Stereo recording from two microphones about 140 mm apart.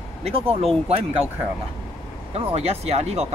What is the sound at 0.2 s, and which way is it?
Speech, 45° right (ahead or behind).